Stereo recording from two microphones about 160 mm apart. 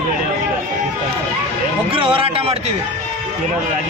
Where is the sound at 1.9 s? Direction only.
35° right (ahead or behind).